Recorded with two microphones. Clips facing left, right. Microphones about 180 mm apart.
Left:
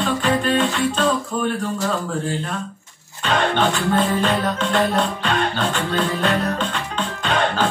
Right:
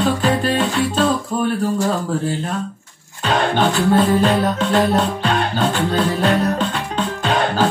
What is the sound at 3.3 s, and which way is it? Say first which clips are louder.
Music: right 2 dB; 40° right (ahead or behind).